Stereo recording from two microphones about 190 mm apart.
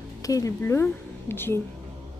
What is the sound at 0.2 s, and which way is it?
A woman's voice, 15° left (ahead or behind).